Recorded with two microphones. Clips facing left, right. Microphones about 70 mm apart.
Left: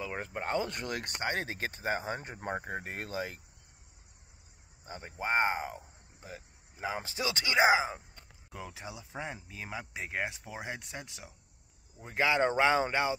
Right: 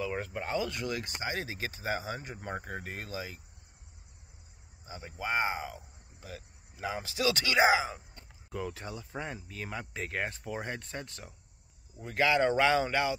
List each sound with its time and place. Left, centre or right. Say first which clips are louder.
0.0 s speech: right 2 dB; left
0.5 s speech: even; left
2.3 s speech: left 2 dB; left
4.8 s speech: left 1 dB; left
6.3 s speech: right 1 dB; left
8.5 s speech: right 5 dB; centre
12.0 s speech: right 1 dB; left